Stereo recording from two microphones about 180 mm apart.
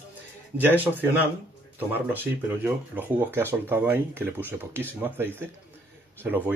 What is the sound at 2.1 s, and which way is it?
Speech, 10° right (ahead or behind).